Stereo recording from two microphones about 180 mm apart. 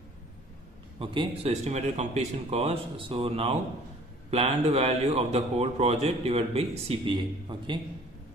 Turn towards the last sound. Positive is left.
turn(degrees=-25)  # may be behind; listen again after turning